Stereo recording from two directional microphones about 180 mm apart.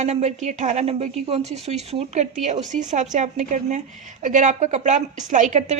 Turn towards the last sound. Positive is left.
turn(degrees=-40)  # may be behind; listen again after turning